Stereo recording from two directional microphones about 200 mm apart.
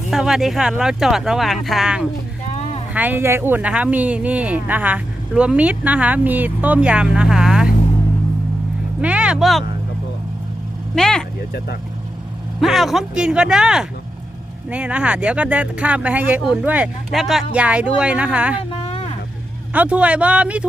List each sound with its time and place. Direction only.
0.1 s speech: centre (ahead or behind)
2.6 s a sound: 35° left (ahead or behind)
2.9 s speech: 10° right (ahead or behind)
9.0 s speech: 5° right (ahead or behind)
10.9 s speech: 5° left (ahead or behind)
12.5 s speech: centre (ahead or behind)
18.8 s a sound: 30° left (ahead or behind)
19.7 s speech: 5° right (ahead or behind)